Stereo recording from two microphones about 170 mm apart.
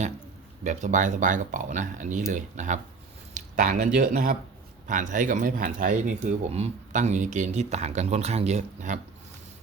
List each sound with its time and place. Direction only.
0.6 s speech: 45° right (ahead or behind)